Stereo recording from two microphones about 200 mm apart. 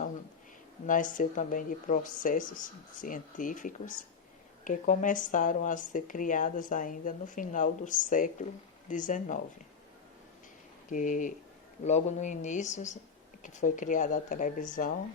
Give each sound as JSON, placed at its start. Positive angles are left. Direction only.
{"t": 0.9, "sound": "speech", "side_deg": 40}
{"t": 10.9, "sound": "speech", "side_deg": 40}